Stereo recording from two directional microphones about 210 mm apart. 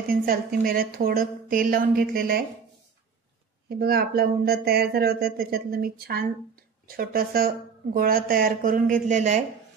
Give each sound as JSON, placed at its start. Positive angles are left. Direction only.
{"t": 0.1, "sound": "speech", "side_deg": -45}
{"t": 3.6, "sound": "speech", "side_deg": -45}